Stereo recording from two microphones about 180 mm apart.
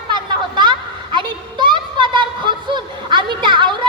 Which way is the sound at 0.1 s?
25° right (ahead or behind).